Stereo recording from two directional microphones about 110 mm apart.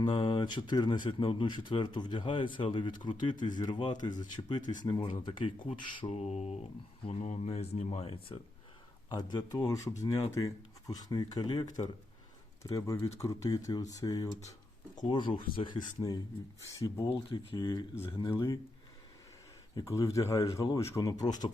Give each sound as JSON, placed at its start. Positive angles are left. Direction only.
{"t": 0.0, "sound": "speech", "side_deg": 45}
{"t": 6.1, "sound": "speech", "side_deg": 80}
{"t": 9.0, "sound": "speech", "side_deg": 40}
{"t": 15.0, "sound": "speech", "side_deg": 50}
{"t": 17.1, "sound": "speech", "side_deg": 50}
{"t": 19.7, "sound": "speech", "side_deg": 30}